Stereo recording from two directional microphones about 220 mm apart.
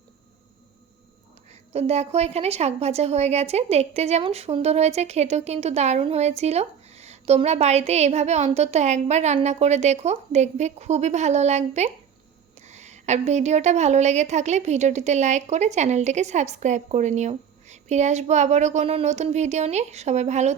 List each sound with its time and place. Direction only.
1.7 s a woman's voice: 30° right (ahead or behind)